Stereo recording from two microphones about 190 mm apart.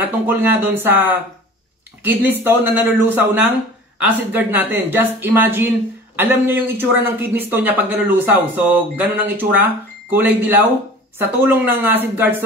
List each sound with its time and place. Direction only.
0.0 s speech: 10° right (ahead or behind)